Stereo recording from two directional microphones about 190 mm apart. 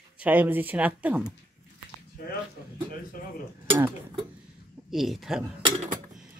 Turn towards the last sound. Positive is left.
turn(degrees=-35)  # may be behind; listen again after turning